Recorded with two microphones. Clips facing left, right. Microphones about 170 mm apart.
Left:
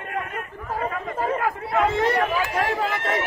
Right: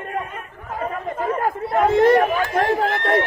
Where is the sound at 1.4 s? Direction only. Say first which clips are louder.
Right 6 dB; 50° right (ahead or behind).